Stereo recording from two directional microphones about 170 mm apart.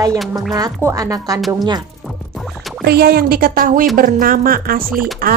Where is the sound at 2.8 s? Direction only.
65° right (ahead or behind).